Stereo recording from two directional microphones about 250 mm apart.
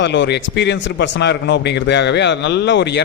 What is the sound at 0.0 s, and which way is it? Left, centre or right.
A man's voice, left.